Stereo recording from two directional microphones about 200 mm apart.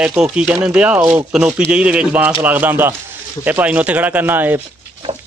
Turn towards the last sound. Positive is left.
turn(degrees=-10)  # may be behind; listen again after turning